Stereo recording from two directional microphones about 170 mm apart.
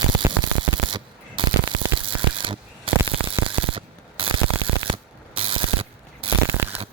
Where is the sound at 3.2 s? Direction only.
30° right (ahead or behind).